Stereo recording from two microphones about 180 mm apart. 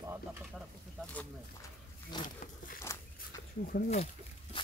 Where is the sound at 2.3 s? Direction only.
50° left (ahead or behind).